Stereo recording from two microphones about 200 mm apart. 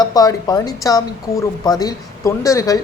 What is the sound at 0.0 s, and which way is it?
A woman's voice, 20° left (ahead or behind).